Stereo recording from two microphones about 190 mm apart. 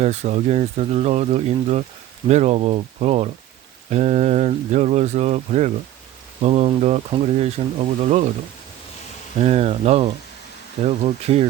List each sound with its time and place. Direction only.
0.0 s speech: 35° right (ahead or behind)
9.4 s speech: 35° right (ahead or behind)